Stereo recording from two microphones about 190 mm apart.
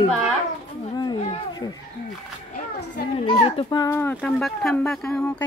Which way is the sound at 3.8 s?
15° left (ahead or behind).